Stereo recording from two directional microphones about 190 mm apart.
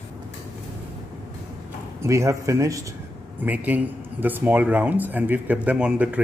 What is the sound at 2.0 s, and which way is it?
Speech, 15° right (ahead or behind).